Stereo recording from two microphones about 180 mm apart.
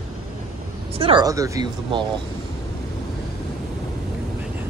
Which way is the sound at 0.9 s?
30° right (ahead or behind).